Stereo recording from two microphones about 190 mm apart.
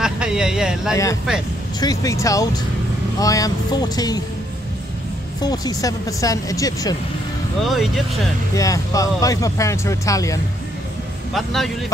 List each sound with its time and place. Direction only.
0.0 s speech: 5° right (ahead or behind)
1.8 s speech: 20° left (ahead or behind)
5.4 s speech: 20° left (ahead or behind)
7.6 s speech: centre (ahead or behind)
8.5 s speech: 15° left (ahead or behind)
11.3 s speech: centre (ahead or behind)